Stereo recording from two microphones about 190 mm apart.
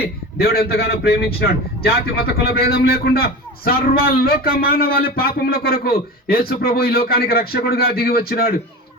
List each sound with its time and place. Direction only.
0.0 s a man's voice: 55° left (ahead or behind)